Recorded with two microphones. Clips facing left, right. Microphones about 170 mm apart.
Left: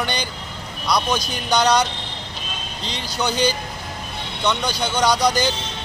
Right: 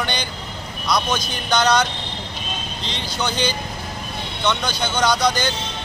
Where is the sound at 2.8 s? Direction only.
40° left (ahead or behind).